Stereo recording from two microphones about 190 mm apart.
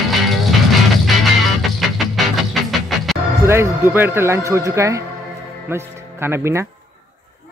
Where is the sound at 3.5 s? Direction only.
15° right (ahead or behind).